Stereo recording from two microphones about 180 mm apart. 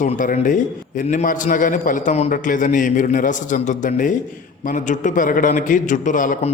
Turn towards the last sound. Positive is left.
turn(degrees=45)  # may be behind; listen again after turning